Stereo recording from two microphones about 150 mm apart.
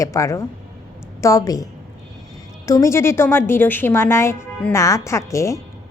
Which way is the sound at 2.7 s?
20° left (ahead or behind).